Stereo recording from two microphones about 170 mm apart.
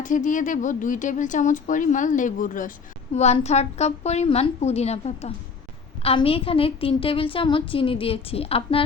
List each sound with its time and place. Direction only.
0.0 s a woman's voice: 50° left (ahead or behind)